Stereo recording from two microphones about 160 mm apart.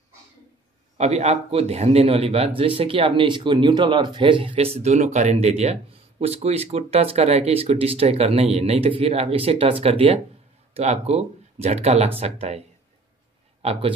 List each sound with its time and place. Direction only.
0.9 s a man's voice: 45° right (ahead or behind)